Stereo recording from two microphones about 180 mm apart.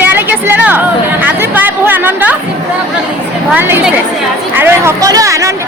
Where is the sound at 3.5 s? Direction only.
10° right (ahead or behind).